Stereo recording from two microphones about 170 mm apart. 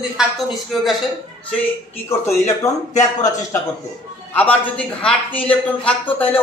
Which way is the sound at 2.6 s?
20° left (ahead or behind).